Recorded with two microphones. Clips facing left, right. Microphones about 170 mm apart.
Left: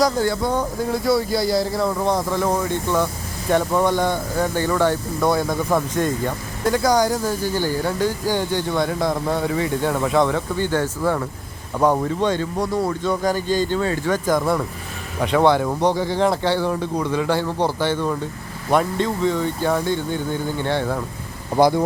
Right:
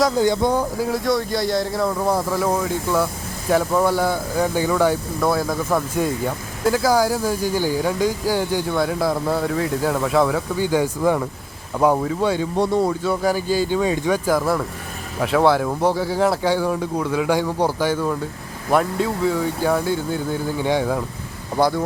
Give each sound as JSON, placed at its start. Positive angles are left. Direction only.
{"t": 0.2, "sound": "speech", "side_deg": -15}
{"t": 0.6, "sound": "speech", "side_deg": -5}
{"t": 12.5, "sound": "speech", "side_deg": -25}
{"t": 12.9, "sound": "speech", "side_deg": -10}
{"t": 21.5, "sound": "speech", "side_deg": 15}